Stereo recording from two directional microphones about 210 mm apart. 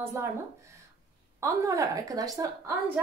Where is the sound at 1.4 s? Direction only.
15° right (ahead or behind).